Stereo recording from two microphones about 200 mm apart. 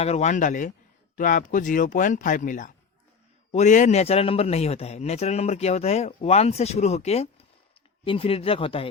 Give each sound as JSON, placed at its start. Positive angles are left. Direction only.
{"t": 0.0, "sound": "a man's voice", "side_deg": 35}